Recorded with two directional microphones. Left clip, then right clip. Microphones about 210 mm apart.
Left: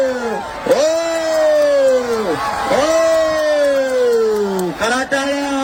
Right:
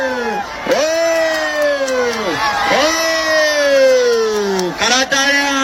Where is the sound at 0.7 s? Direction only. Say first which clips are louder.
Right 1 dB; 55° left (ahead or behind).